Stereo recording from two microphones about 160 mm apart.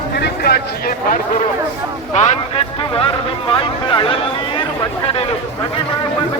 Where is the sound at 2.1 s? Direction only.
45° left (ahead or behind).